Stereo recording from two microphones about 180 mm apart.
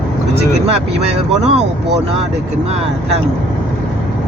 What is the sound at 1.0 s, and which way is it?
Speech, 35° right (ahead or behind).